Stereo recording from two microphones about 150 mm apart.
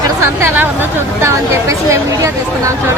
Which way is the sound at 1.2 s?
20° right (ahead or behind).